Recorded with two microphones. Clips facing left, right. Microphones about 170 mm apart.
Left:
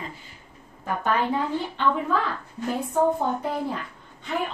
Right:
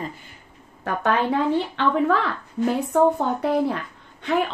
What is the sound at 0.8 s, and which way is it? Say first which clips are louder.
Speech: right 3 dB; 75° right (ahead or behind).